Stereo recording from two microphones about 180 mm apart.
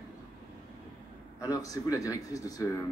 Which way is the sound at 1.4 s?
20° left (ahead or behind).